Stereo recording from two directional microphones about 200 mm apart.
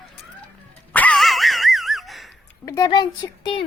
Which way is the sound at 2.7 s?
20° left (ahead or behind).